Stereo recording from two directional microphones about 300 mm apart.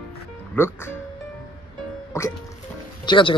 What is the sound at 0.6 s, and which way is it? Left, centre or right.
Speech, centre.